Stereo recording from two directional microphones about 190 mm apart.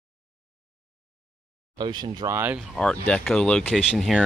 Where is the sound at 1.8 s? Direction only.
25° right (ahead or behind).